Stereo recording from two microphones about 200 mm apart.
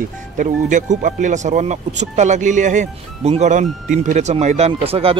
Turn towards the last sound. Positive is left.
turn(degrees=-30)  # may be behind; listen again after turning